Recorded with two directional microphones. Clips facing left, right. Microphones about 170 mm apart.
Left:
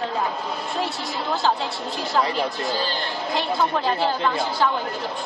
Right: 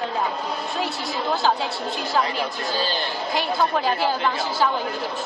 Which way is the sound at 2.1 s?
Centre (ahead or behind).